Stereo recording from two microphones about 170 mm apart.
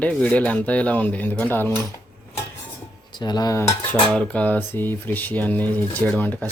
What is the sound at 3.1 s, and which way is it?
Dishes, 25° left (ahead or behind).